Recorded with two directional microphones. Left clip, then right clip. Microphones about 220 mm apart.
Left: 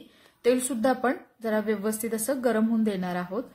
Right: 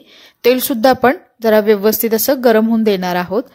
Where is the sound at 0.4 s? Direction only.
40° right (ahead or behind).